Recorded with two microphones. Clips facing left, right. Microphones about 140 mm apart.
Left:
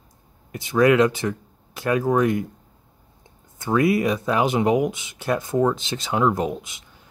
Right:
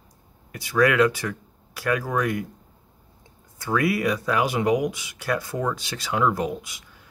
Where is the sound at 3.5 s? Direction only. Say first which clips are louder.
Left 4 dB; 20° left (ahead or behind).